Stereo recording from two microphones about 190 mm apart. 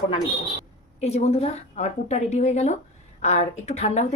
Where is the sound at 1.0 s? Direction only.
35° left (ahead or behind).